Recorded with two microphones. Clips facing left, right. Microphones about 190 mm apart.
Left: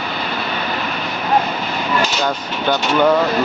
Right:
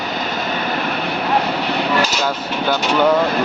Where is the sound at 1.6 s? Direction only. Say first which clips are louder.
Right 3 dB; 70° right (ahead or behind).